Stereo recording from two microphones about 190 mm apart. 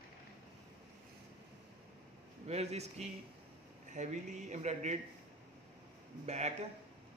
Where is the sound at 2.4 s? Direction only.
35° right (ahead or behind).